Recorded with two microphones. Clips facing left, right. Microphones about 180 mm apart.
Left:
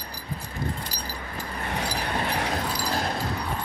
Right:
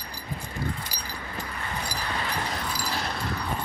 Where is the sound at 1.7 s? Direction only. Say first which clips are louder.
Left 5 dB; 70° left (ahead or behind).